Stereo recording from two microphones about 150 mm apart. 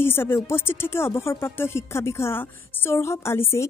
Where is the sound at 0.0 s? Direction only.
15° left (ahead or behind).